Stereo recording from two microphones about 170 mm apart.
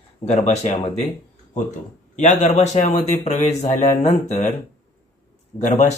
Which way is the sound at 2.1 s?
45° left (ahead or behind).